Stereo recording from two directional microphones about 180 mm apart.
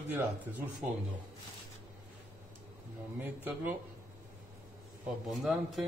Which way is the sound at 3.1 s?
10° right (ahead or behind).